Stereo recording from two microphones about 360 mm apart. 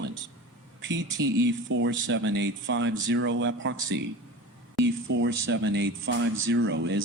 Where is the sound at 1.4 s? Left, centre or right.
Right.